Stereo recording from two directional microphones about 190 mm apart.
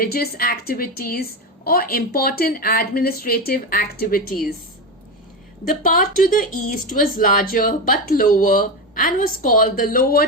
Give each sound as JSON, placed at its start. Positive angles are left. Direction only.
{"t": 0.0, "sound": "speech", "side_deg": 50}
{"t": 5.6, "sound": "speech", "side_deg": 45}